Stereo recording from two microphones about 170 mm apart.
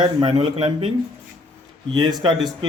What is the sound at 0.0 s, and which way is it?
Speech, 30° right (ahead or behind).